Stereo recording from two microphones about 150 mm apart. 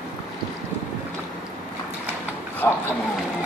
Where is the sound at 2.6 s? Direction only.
15° left (ahead or behind).